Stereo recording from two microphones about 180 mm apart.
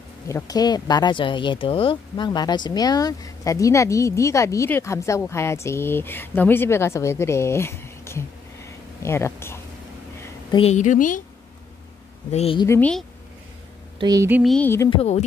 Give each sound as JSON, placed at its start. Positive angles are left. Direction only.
{"t": 0.3, "sound": "speech", "side_deg": 20}
{"t": 10.5, "sound": "a woman's voice", "side_deg": 35}
{"t": 12.3, "sound": "a woman's voice", "side_deg": 35}
{"t": 12.5, "sound": "speech", "side_deg": 15}
{"t": 13.9, "sound": "speech", "side_deg": -20}
{"t": 14.4, "sound": "a sound", "side_deg": 5}
{"t": 14.9, "sound": "a woman's voice", "side_deg": 35}